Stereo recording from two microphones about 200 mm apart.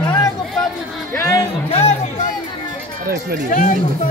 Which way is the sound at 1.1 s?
15° left (ahead or behind).